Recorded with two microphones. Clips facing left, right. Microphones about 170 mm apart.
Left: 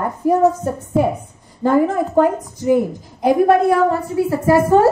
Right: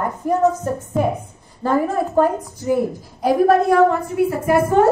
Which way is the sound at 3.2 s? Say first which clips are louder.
Left 2 dB; 25° left (ahead or behind).